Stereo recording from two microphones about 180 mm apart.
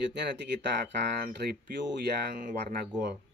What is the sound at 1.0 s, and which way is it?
Speech, 60° right (ahead or behind).